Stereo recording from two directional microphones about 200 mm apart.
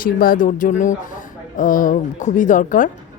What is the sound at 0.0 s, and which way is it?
Speech, 45° left (ahead or behind).